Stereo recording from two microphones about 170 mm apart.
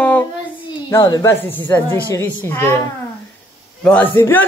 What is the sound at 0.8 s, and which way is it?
A woman's voice, 20° left (ahead or behind).